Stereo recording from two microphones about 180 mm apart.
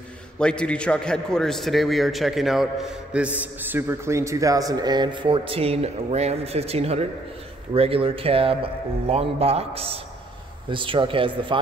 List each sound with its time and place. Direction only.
0.4 s a man's voice: 5° left (ahead or behind); by 11.6 s 30° right (ahead or behind)